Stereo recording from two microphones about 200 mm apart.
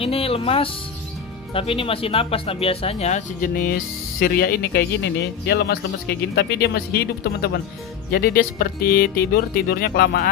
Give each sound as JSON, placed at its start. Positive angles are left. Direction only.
{"t": 0.0, "sound": "speech", "side_deg": 30}